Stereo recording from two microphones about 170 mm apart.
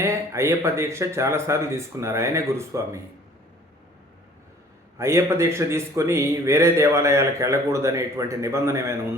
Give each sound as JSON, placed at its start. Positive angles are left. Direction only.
{"t": 0.0, "sound": "a man's voice", "side_deg": -15}
{"t": 4.9, "sound": "a man's voice", "side_deg": -15}